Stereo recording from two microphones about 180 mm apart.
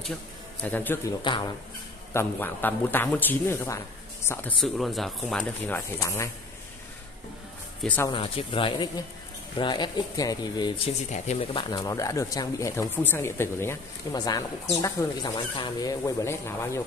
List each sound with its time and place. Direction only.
0.6 s speech: 10° left (ahead or behind)
1.2 s speech: 25° left (ahead or behind)
2.1 s speech: 10° left (ahead or behind)
5.9 s speech: 15° left (ahead or behind)
7.8 s speech: 10° left (ahead or behind)
8.1 s speech: 30° left (ahead or behind)
10.9 s speech: 40° left (ahead or behind)
11.8 s speech: 20° left (ahead or behind)